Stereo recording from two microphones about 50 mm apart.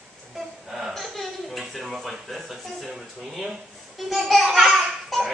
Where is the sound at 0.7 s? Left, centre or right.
Centre.